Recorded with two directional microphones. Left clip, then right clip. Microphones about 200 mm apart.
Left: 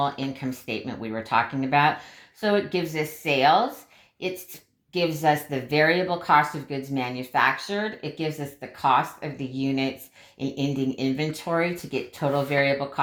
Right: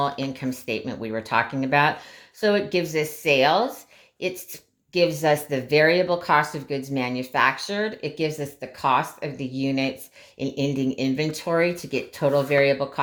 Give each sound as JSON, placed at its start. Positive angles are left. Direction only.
{"t": 0.0, "sound": "speech", "side_deg": -25}
{"t": 5.0, "sound": "speech", "side_deg": -25}